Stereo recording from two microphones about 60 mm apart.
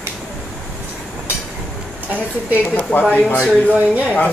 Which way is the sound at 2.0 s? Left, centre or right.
Right.